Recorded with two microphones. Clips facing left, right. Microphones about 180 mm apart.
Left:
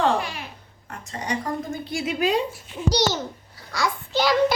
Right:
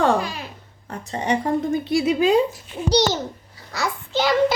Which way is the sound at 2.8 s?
35° right (ahead or behind).